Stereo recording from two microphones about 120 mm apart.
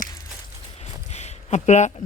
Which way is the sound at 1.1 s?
70° left (ahead or behind).